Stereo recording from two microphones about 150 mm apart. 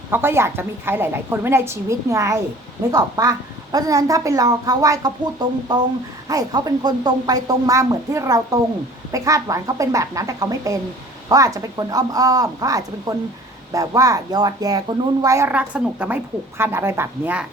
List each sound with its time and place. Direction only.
0.1 s a woman's voice: 15° right (ahead or behind)